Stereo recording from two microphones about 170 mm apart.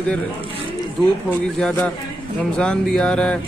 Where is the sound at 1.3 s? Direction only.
10° left (ahead or behind).